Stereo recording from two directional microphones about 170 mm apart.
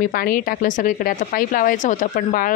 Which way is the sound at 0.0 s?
55° left (ahead or behind).